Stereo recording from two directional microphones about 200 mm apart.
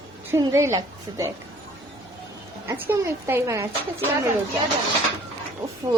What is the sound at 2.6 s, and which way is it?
A woman's voice, 10° right (ahead or behind).